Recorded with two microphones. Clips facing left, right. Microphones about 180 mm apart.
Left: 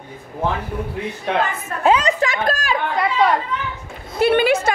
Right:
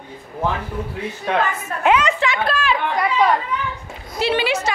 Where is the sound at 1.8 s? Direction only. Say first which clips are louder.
Left 1 dB; 35° left (ahead or behind).